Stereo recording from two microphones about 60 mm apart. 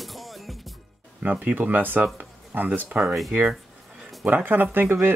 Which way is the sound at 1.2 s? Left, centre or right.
Right.